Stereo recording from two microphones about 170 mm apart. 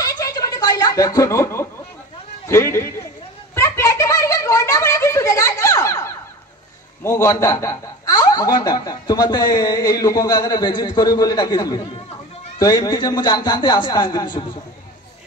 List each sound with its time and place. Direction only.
0.0 s snicker: 20° left (ahead or behind)
2.4 s a man's voice: 15° left (ahead or behind)
3.5 s a sound: 15° left (ahead or behind)
7.0 s a man's voice: 15° left (ahead or behind)